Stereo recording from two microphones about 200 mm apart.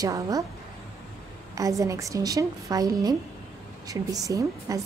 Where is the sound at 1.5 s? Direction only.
15° right (ahead or behind).